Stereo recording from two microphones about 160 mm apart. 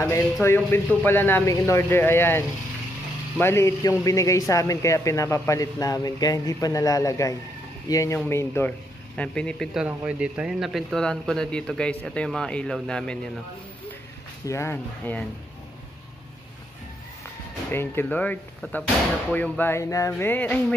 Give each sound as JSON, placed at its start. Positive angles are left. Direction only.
{"t": 0.0, "sound": "speech", "side_deg": 15}
{"t": 9.8, "sound": "speech", "side_deg": -5}
{"t": 14.4, "sound": "speech", "side_deg": 15}
{"t": 17.6, "sound": "speech", "side_deg": 15}